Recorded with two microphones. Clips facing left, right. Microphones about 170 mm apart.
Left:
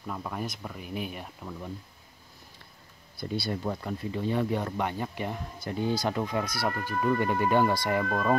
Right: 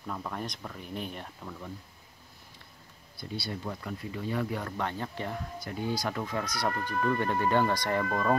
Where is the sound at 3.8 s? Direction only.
30° left (ahead or behind).